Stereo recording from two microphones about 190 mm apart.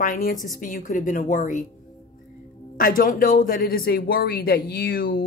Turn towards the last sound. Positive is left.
turn(degrees=50)  # may be behind; listen again after turning